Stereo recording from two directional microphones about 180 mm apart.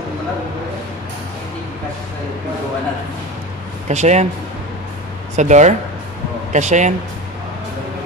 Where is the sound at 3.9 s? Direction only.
40° right (ahead or behind).